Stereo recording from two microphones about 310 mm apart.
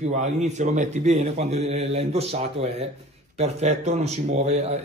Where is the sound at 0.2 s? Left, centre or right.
Right.